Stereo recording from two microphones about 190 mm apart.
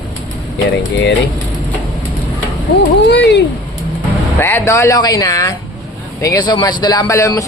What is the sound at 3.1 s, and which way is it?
Speech, 65° left (ahead or behind).